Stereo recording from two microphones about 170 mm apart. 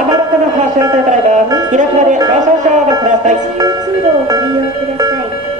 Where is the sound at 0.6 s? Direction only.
45° right (ahead or behind).